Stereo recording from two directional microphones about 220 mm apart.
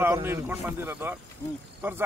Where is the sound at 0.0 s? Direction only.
10° right (ahead or behind).